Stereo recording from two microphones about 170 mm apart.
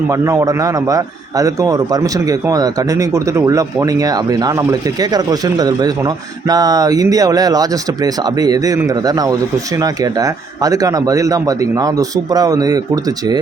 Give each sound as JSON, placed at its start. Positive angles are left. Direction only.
{"t": 0.1, "sound": "a man's voice", "side_deg": -15}